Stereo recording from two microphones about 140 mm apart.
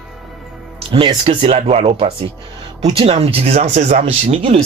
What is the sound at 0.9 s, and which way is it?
Speech, 45° right (ahead or behind).